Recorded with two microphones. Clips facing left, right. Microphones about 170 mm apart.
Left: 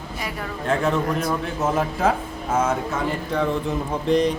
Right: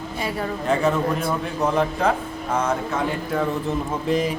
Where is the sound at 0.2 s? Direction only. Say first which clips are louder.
Right 5 dB; 30° right (ahead or behind).